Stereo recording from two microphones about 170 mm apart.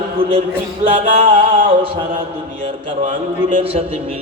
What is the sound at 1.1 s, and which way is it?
Music, 35° right (ahead or behind).